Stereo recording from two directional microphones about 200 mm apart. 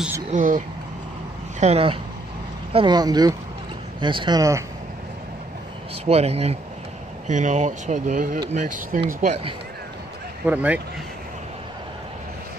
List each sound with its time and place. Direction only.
0.3 s speech: 40° right (ahead or behind); by 4.6 s 15° right (ahead or behind)
6.0 s speech: 30° right (ahead or behind)
10.4 s speech: 5° right (ahead or behind)